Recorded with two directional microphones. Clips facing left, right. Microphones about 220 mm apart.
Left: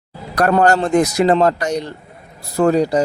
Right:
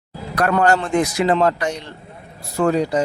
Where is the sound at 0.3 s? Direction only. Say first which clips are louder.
Left 3 dB; 40° left (ahead or behind).